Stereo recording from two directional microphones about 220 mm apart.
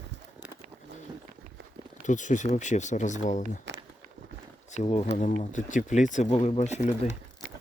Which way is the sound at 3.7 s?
50° right (ahead or behind).